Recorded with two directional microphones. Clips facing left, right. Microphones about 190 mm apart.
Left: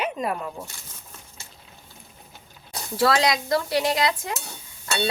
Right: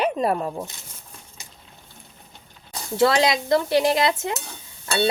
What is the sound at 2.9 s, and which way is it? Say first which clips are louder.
Dishes: right 2 dB; 25° right (ahead or behind).